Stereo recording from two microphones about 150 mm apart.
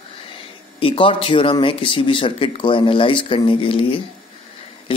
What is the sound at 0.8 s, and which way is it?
Speech, 35° left (ahead or behind).